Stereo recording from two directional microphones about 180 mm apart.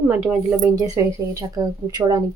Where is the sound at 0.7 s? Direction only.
20° right (ahead or behind).